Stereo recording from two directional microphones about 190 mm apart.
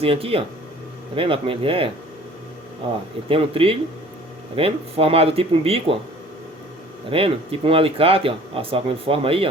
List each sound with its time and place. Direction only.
0.0 s speech: 30° right (ahead or behind)
3.2 s speech: 30° right (ahead or behind)
7.1 s speech: 30° right (ahead or behind)